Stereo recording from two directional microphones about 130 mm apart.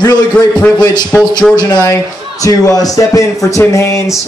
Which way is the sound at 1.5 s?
30° left (ahead or behind).